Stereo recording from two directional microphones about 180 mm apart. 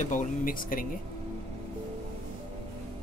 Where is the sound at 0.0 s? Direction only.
45° left (ahead or behind).